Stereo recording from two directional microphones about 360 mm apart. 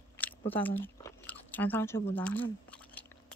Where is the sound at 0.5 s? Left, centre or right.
Centre.